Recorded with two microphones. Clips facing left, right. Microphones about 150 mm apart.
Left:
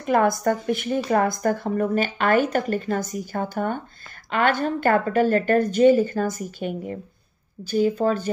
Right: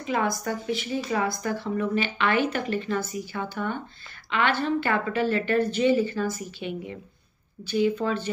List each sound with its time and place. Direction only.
0.0 s speech: 50° left (ahead or behind)